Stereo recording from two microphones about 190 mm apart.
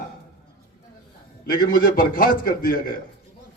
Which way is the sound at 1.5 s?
50° left (ahead or behind).